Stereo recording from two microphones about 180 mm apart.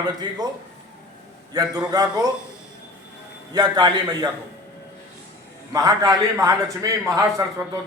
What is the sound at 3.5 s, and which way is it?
Speech, 20° right (ahead or behind).